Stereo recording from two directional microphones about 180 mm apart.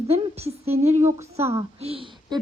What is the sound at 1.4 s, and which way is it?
Speech, 15° right (ahead or behind).